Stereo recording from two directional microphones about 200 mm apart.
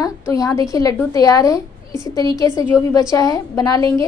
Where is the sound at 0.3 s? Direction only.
15° left (ahead or behind).